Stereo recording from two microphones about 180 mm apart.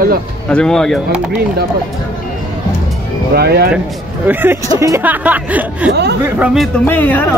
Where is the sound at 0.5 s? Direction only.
5° left (ahead or behind).